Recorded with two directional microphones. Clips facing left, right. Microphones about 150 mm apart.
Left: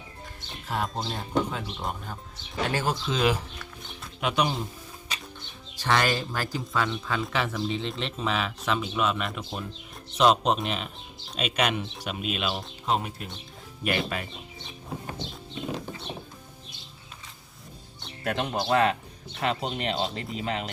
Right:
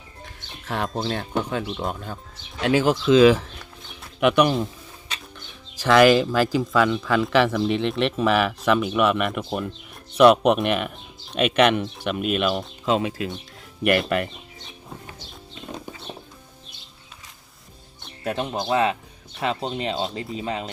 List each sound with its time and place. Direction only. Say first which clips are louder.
0.7 s speech: right 5 dB; 80° right
4.2 s speech: right 8 dB; 65° right (ahead or behind)
5.8 s speech: right 10 dB; 90° right
7.3 s speech: right 10 dB; 70° right (ahead or behind); by 12.6 s 55° right (ahead or behind)
12.8 s speech: right 5 dB; 90° right
13.8 s speech: right 8 dB; 60° right (ahead or behind)
18.3 s speech: right 2 dB; centre (ahead or behind)